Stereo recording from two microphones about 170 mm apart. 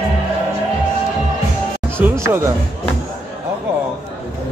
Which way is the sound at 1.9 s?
15° right (ahead or behind).